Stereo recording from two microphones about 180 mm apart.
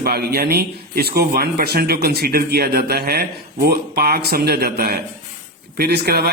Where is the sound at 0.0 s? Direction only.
60° right (ahead or behind).